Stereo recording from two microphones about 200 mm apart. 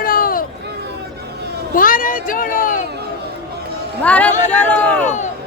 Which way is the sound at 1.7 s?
45° left (ahead or behind).